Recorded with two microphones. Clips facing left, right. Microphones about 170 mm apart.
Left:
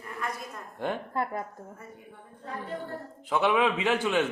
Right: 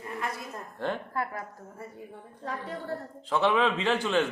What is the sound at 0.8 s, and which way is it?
Speech, 20° left (ahead or behind).